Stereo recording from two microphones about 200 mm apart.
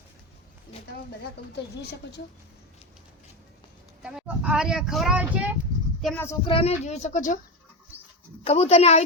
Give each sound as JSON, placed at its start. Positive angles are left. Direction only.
{"t": 1.5, "sound": "speech", "side_deg": 55}
{"t": 4.0, "sound": "speech", "side_deg": -5}
{"t": 6.4, "sound": "speech", "side_deg": 25}
{"t": 8.4, "sound": "speech", "side_deg": 30}